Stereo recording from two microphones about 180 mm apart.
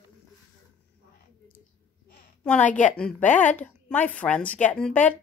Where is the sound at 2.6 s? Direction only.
45° left (ahead or behind).